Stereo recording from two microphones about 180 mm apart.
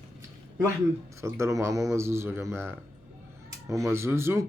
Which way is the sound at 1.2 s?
15° right (ahead or behind).